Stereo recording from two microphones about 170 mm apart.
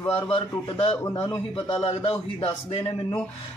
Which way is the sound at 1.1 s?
30° left (ahead or behind).